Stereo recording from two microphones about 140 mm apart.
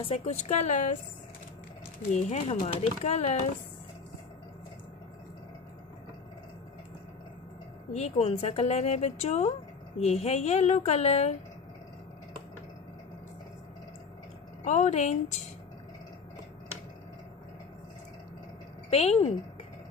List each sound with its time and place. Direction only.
0.0 s a woman's voice: 50° left (ahead or behind)
2.0 s a woman's voice: 60° left (ahead or behind)
7.9 s speech: 50° left (ahead or behind)
14.6 s a woman's voice: 55° left (ahead or behind)
18.9 s speech: 45° left (ahead or behind)